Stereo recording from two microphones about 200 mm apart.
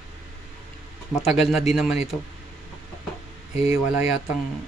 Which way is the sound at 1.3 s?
Centre (ahead or behind).